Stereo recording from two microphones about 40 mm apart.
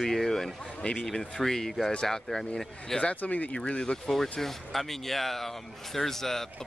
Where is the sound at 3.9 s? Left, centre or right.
Centre.